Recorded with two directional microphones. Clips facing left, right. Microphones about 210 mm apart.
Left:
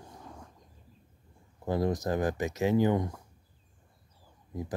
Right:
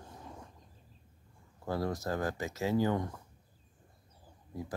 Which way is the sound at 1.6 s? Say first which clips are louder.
Left 5 dB; 20° left (ahead or behind).